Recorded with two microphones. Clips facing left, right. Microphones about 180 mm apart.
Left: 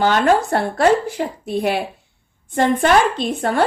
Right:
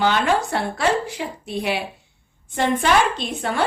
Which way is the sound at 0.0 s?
45° left (ahead or behind).